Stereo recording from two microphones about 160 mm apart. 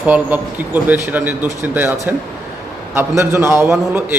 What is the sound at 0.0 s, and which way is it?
A man's voice, 10° right (ahead or behind).